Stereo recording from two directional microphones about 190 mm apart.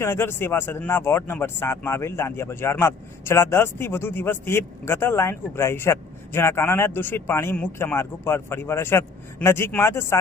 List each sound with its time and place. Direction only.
0.0 s speech: 10° left (ahead or behind)